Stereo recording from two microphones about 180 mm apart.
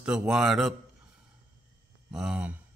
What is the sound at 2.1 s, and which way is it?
Speech, 5° right (ahead or behind).